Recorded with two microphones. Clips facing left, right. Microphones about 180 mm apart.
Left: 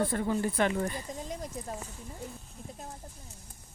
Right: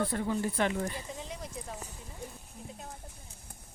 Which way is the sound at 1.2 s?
45° left (ahead or behind).